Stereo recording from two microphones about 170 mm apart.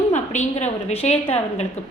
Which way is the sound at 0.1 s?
40° left (ahead or behind).